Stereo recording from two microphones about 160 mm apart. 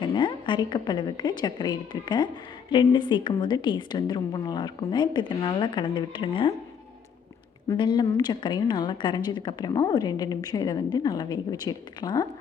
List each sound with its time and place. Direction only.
0.0 s a woman's voice: 30° left (ahead or behind)
7.7 s a woman's voice: 30° left (ahead or behind)